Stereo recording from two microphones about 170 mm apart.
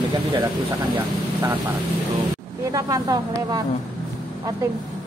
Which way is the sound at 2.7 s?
20° right (ahead or behind).